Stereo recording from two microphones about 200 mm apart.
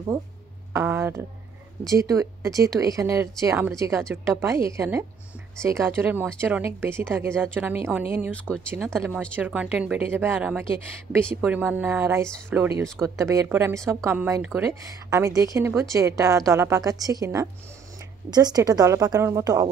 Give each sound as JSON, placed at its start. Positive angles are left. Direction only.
{"t": 0.7, "sound": "a woman's voice", "side_deg": -10}
{"t": 8.3, "sound": "speech", "side_deg": 5}
{"t": 8.7, "sound": "a woman's voice", "side_deg": -10}
{"t": 9.1, "sound": "a woman's voice", "side_deg": 5}
{"t": 9.4, "sound": "a woman's voice", "side_deg": -5}